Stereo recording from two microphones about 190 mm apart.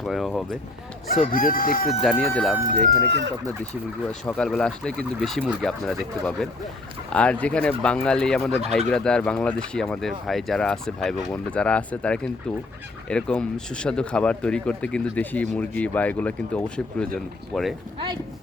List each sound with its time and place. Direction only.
0.0 s speech: centre (ahead or behind)
1.1 s speech: 45° left (ahead or behind)
1.9 s speech: centre (ahead or behind)
2.9 s speech: 60° right (ahead or behind)
4.3 s speech: 5° left (ahead or behind)